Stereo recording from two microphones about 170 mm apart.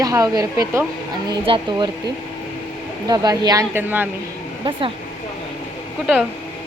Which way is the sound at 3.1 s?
25° right (ahead or behind).